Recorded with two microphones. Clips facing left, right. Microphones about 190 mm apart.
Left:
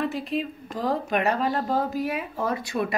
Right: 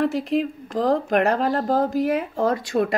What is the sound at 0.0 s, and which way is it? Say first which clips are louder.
Speech: right 6 dB; 90° right.